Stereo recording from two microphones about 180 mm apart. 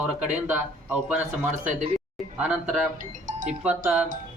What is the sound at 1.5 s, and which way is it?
Speech, 40° right (ahead or behind).